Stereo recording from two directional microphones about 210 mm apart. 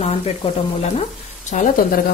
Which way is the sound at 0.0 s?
30° left (ahead or behind).